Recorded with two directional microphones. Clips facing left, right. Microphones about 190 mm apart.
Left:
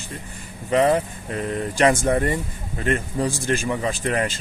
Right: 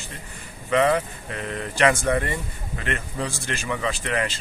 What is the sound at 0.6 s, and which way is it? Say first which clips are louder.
A man's voice: left 2 dB; 35° left (ahead or behind).